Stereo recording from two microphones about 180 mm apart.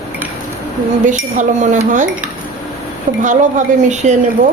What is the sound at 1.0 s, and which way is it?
Speech, 45° right (ahead or behind).